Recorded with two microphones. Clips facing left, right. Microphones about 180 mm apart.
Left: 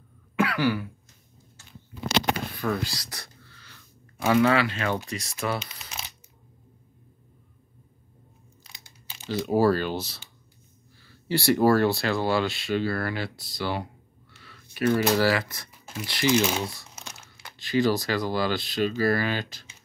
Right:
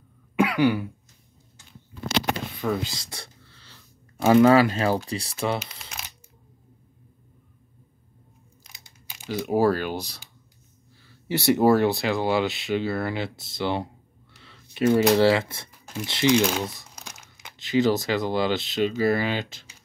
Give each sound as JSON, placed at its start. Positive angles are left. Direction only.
{"t": 0.4, "sound": "throat clearing", "side_deg": -15}
{"t": 2.6, "sound": "speech", "side_deg": -20}
{"t": 9.0, "sound": "speech", "side_deg": -10}
{"t": 11.2, "sound": "speech", "side_deg": -20}
{"t": 14.3, "sound": "a sound", "side_deg": -25}
{"t": 15.1, "sound": "speech", "side_deg": -25}
{"t": 16.4, "sound": "speech", "side_deg": 5}
{"t": 17.0, "sound": "speech", "side_deg": -15}